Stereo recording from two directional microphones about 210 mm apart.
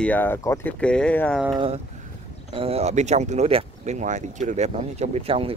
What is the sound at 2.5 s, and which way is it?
Speech, 25° right (ahead or behind).